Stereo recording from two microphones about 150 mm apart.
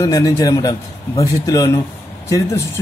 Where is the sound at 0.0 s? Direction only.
25° left (ahead or behind).